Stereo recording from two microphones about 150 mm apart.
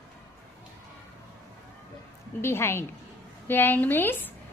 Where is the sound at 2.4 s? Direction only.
15° left (ahead or behind).